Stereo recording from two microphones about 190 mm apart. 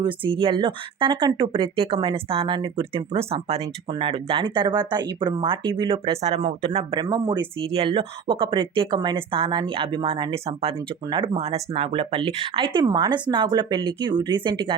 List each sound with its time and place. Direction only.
0.0 s speech: 25° right (ahead or behind)